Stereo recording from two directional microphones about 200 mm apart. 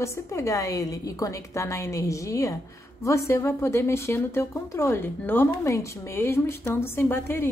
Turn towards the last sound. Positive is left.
turn(degrees=10)  # may be behind; listen again after turning